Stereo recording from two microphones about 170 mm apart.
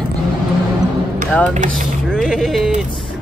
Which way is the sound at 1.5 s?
50° right (ahead or behind).